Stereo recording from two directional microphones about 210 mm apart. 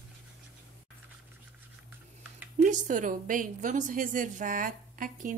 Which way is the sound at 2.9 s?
40° right (ahead or behind).